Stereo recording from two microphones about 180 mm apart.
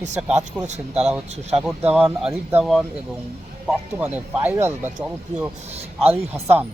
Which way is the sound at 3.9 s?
10° right (ahead or behind).